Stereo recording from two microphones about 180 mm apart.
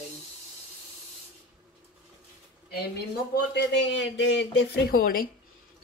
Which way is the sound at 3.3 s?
70° left (ahead or behind).